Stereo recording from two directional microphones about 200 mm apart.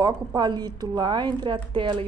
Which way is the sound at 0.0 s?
20° right (ahead or behind).